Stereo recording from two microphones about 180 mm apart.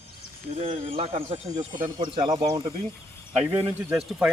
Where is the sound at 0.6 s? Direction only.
30° right (ahead or behind).